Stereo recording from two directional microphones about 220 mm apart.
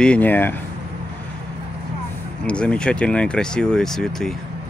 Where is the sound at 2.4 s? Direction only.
5° left (ahead or behind).